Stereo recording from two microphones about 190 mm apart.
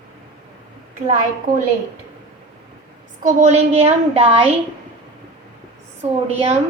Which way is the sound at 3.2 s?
35° right (ahead or behind).